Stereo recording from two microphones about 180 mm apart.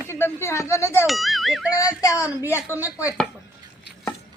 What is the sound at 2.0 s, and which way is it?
Speech, 20° left (ahead or behind).